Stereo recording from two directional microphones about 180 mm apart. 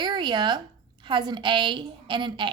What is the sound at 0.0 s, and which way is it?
A woman's voice, 25° right (ahead or behind).